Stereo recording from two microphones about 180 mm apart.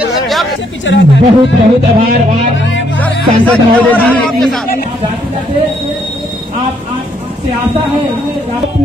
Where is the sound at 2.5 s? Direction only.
90° left.